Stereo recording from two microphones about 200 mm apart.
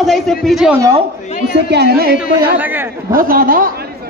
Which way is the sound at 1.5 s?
55° right (ahead or behind).